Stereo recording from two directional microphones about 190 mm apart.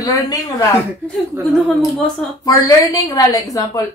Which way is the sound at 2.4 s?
20° left (ahead or behind).